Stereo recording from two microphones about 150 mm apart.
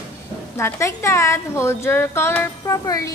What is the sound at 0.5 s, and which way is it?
A woman's voice, 20° left (ahead or behind).